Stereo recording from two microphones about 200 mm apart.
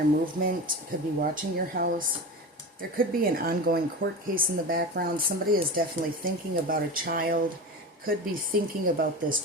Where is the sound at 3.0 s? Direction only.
45° right (ahead or behind).